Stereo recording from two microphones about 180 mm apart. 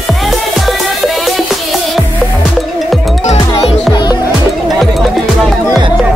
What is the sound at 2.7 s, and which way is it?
Music, centre (ahead or behind).